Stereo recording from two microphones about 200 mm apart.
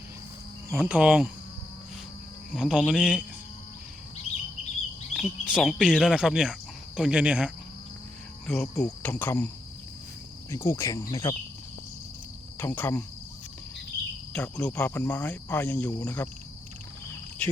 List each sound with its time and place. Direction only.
0.7 s cricket: 10° right (ahead or behind)
2.5 s speech: 5° right (ahead or behind)
5.1 s speech: 5° right (ahead or behind)
10.5 s speech: 15° left (ahead or behind)
12.5 s speech: 10° left (ahead or behind)
14.3 s speech: 5° left (ahead or behind)
17.4 s cricket: 5° left (ahead or behind)